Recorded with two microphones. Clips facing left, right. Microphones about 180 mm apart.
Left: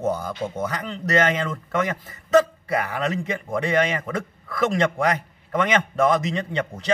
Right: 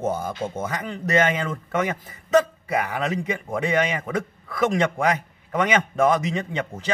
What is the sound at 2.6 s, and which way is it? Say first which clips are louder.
A man's voice: even; 10° right (ahead or behind).